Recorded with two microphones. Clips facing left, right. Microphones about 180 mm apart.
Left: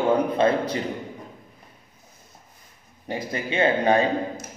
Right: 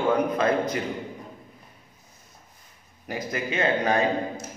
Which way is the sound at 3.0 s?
30° left (ahead or behind).